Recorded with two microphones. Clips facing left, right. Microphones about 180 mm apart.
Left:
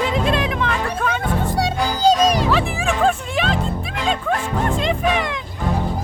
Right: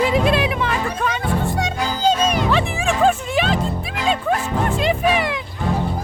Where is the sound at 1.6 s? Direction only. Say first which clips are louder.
Left 2 dB; 35° left (ahead or behind).